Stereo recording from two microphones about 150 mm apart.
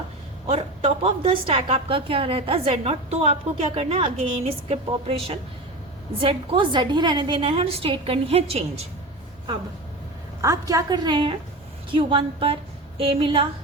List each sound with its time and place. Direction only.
0.4 s a woman's voice: 40° right (ahead or behind)
10.4 s a woman's voice: 20° right (ahead or behind)